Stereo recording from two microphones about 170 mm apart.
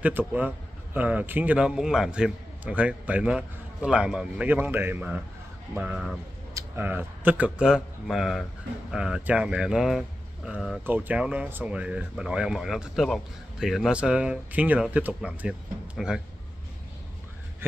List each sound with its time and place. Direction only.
0.0 s a man's voice: 10° right (ahead or behind)